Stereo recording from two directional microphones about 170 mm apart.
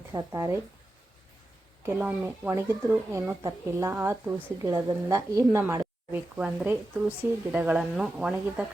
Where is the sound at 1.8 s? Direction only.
10° right (ahead or behind).